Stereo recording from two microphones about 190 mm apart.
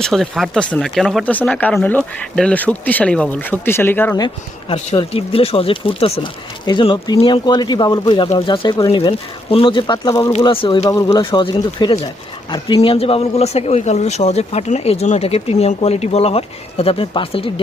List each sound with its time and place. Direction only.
0.0 s speech: centre (ahead or behind)
4.7 s speech: 30° left (ahead or behind)